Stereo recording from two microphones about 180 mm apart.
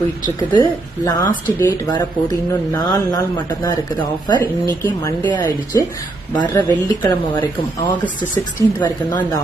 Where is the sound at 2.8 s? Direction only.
20° left (ahead or behind).